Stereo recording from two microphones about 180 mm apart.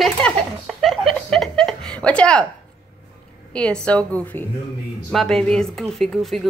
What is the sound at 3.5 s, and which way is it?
A woman's voice, 5° left (ahead or behind).